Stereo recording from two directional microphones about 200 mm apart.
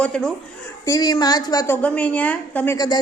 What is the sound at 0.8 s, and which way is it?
Speech, 15° left (ahead or behind).